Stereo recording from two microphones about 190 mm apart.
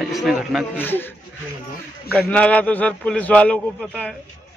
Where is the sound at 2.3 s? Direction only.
5° left (ahead or behind).